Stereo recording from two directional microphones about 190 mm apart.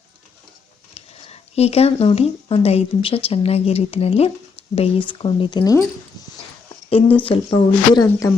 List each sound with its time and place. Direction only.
0.9 s speech: 35° left (ahead or behind)
7.3 s speech: 25° left (ahead or behind)